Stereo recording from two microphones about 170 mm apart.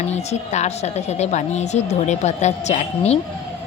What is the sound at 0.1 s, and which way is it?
A woman's voice, 40° left (ahead or behind).